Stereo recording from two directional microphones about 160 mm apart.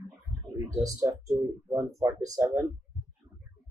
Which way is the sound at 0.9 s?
20° right (ahead or behind).